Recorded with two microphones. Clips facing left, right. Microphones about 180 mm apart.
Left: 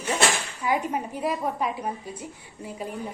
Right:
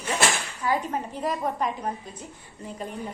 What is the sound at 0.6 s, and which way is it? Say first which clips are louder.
A woman's voice: left 1 dB; 10° left (ahead or behind).